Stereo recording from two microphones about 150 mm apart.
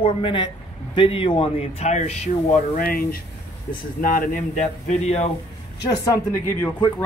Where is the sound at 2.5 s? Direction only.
70° left (ahead or behind); by 5.2 s 50° left (ahead or behind).